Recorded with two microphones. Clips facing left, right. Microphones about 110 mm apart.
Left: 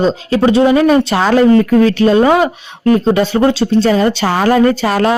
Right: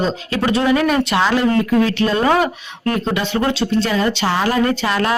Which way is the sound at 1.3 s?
45° left (ahead or behind).